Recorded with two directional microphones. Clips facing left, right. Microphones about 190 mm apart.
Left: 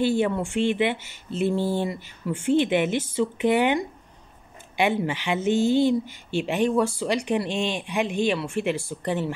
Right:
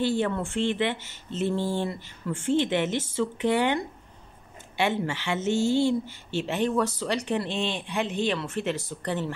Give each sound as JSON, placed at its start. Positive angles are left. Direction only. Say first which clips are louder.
{"t": 0.0, "sound": "speech", "louder": "left 3 dB", "side_deg": 15}